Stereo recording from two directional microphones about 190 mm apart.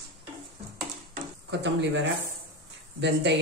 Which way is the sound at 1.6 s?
65° right (ahead or behind).